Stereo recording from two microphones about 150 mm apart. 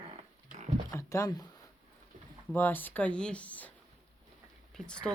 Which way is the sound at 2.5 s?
15° left (ahead or behind).